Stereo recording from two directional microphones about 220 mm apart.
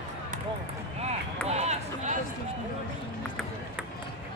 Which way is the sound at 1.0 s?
30° right (ahead or behind).